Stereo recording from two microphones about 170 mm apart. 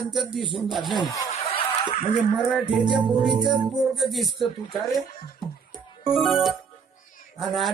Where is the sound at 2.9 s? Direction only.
25° right (ahead or behind).